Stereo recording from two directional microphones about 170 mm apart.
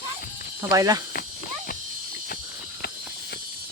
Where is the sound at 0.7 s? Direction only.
20° right (ahead or behind).